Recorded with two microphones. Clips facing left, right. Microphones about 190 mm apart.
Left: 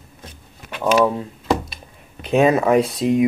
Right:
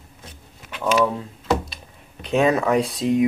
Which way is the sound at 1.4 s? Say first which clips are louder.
Left 1 dB; 5° left (ahead or behind).